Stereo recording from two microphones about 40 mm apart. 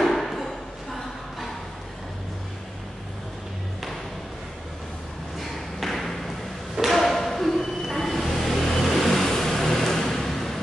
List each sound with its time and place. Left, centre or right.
0.0 s a sound: centre
5.4 s thump: centre
6.9 s vehicle: centre